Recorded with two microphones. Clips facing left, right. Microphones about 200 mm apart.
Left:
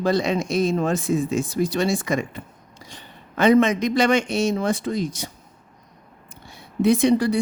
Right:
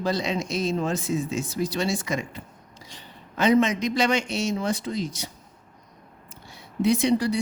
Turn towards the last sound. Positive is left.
turn(degrees=55)  # may be behind; listen again after turning